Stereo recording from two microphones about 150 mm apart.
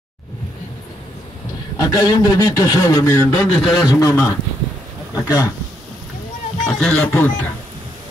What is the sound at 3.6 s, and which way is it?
Speech, 25° left (ahead or behind).